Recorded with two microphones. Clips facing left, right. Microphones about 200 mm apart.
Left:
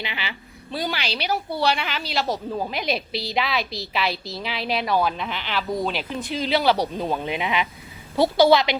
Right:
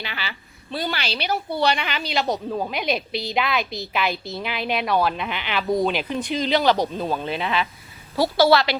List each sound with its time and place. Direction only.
0.0 s a woman's voice: 15° left (ahead or behind); by 6.7 s centre (ahead or behind)
6.7 s a woman's voice: 15° left (ahead or behind)